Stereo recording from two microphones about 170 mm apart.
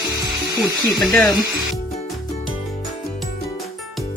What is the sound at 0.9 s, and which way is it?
Speech, centre (ahead or behind).